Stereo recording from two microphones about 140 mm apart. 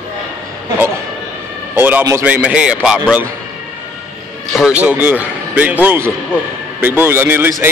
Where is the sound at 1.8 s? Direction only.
15° right (ahead or behind).